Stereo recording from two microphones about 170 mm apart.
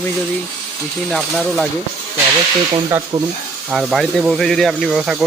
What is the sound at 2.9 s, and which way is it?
Speech, 20° right (ahead or behind).